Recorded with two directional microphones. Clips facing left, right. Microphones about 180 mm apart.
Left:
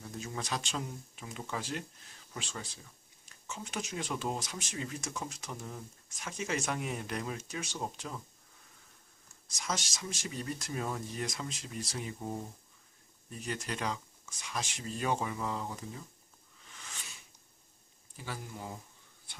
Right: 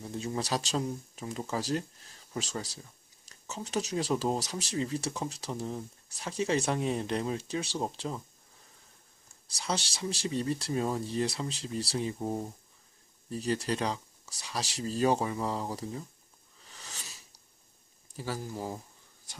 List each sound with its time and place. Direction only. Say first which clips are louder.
0.0 s speech: right 6 dB; 30° right (ahead or behind)
9.5 s speech: right 4 dB; 35° right (ahead or behind)
16.6 s a sound: right 2 dB; 35° right (ahead or behind)
18.1 s speech: right 7 dB; 35° right (ahead or behind)